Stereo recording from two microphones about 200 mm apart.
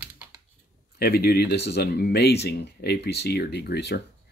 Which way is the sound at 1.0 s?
50° left (ahead or behind).